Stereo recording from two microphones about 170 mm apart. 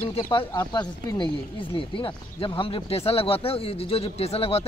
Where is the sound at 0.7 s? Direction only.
25° left (ahead or behind).